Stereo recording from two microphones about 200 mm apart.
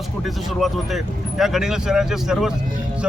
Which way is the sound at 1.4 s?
5° right (ahead or behind).